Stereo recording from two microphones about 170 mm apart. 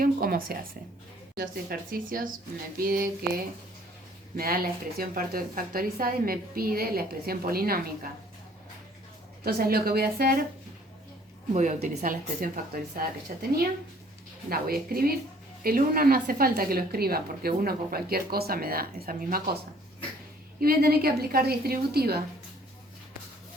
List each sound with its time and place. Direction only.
0.0 s a sound: 60° right (ahead or behind)
1.9 s a woman's voice: 55° right (ahead or behind)
4.4 s a woman's voice: 60° right (ahead or behind)
9.4 s a woman's voice: 60° right (ahead or behind)
11.5 s speech: 45° right (ahead or behind)
14.5 s a woman's voice: 60° right (ahead or behind)
20.6 s a woman's voice: 60° right (ahead or behind)